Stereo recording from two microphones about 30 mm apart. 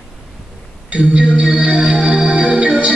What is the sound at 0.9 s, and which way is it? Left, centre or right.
Music, right.